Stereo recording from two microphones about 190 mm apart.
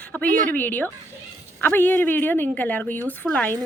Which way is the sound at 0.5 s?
10° left (ahead or behind).